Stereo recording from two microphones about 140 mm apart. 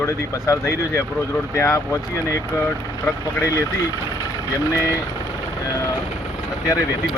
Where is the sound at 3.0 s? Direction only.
20° left (ahead or behind).